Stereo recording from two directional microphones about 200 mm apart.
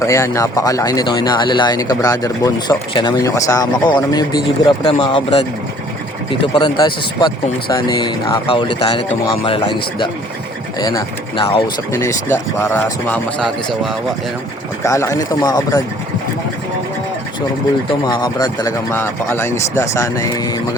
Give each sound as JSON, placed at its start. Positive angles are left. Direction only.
{"t": 0.0, "sound": "speech", "side_deg": 15}
{"t": 10.8, "sound": "speech", "side_deg": 20}
{"t": 14.8, "sound": "speech", "side_deg": 15}
{"t": 18.0, "sound": "speech", "side_deg": 20}